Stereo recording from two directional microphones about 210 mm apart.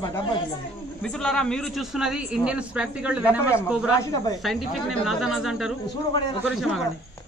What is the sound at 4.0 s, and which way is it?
Speech, 15° left (ahead or behind).